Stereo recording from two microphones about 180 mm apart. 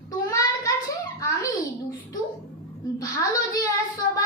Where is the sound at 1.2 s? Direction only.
20° left (ahead or behind).